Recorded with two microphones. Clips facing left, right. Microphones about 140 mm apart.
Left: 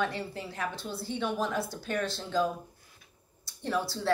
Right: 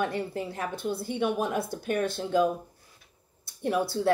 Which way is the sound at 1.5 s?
55° right (ahead or behind).